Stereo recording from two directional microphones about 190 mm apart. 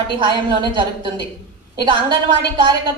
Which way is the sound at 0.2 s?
25° right (ahead or behind).